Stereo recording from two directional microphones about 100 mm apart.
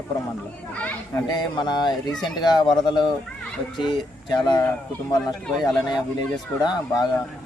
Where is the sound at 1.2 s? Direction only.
45° left (ahead or behind).